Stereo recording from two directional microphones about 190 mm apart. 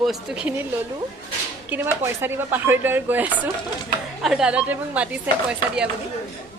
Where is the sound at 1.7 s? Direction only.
10° right (ahead or behind).